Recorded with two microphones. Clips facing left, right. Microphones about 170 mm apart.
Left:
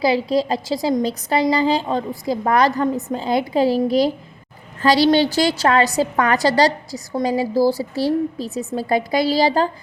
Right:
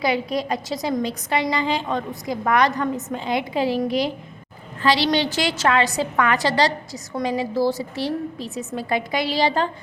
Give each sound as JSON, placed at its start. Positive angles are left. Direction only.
{"t": 0.0, "sound": "a woman's voice", "side_deg": 30}